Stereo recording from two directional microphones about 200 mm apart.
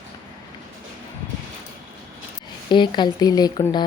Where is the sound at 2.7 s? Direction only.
20° left (ahead or behind).